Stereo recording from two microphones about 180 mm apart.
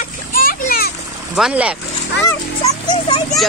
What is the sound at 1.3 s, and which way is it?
Speech, 5° right (ahead or behind).